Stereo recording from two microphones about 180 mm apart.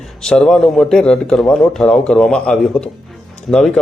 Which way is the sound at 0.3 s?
5° left (ahead or behind).